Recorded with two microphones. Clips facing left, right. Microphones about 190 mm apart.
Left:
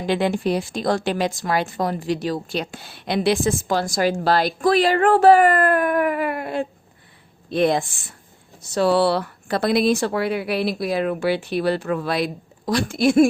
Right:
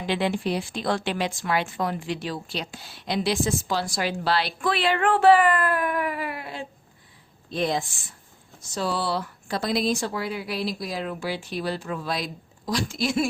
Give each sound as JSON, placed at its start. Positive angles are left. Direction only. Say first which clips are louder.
{"t": 0.0, "sound": "a woman's voice", "louder": "left 5 dB", "side_deg": 45}